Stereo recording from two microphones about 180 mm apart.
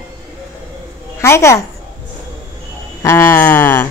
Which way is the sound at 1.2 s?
15° left (ahead or behind).